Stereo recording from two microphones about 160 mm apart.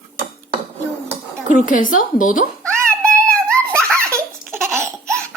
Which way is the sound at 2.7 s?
15° right (ahead or behind).